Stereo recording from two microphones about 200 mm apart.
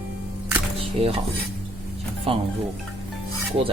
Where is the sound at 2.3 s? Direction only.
25° right (ahead or behind).